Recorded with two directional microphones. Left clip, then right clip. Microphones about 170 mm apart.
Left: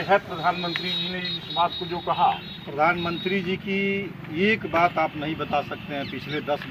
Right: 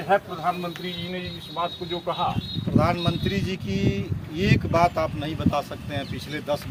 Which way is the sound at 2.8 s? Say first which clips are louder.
Left 6 dB; 45° right (ahead or behind).